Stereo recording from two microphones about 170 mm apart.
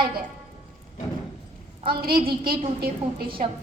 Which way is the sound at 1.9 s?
60° right (ahead or behind).